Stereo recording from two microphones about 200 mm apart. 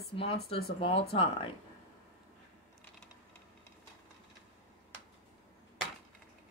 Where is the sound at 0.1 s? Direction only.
30° left (ahead or behind).